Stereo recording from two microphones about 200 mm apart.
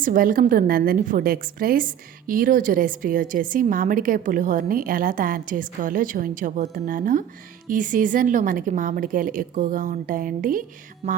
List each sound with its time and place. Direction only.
0.0 s a woman's voice: 45° right (ahead or behind)
11.0 s a woman's voice: 30° right (ahead or behind)